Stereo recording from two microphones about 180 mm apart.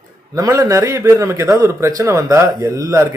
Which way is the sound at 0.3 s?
20° right (ahead or behind).